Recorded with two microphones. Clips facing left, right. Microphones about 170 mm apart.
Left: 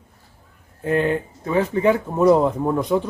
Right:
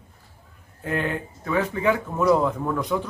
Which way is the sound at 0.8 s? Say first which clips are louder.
Left 7 dB; 25° left (ahead or behind).